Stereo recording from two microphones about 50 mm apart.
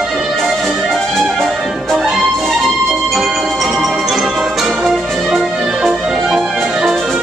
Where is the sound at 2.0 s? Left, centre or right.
Centre.